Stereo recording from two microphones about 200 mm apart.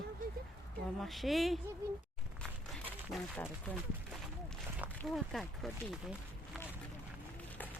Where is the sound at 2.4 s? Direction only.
5° left (ahead or behind).